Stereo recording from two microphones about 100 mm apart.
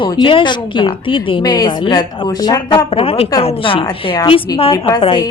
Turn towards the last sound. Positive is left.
turn(degrees=60)  # may be behind; listen again after turning